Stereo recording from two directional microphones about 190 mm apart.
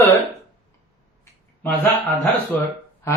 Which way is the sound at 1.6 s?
10° left (ahead or behind).